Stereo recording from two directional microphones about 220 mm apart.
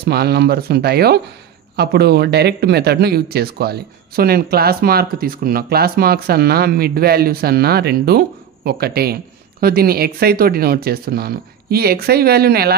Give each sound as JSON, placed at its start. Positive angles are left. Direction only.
{"t": 0.0, "sound": "speech", "side_deg": -45}